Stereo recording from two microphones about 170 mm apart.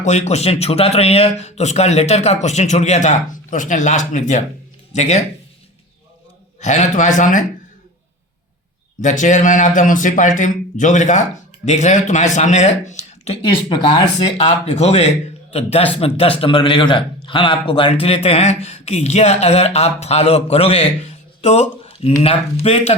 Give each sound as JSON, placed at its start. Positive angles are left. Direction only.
{"t": 0.0, "sound": "a man's voice", "side_deg": 40}
{"t": 6.6, "sound": "a man's voice", "side_deg": 45}
{"t": 9.0, "sound": "a man's voice", "side_deg": 45}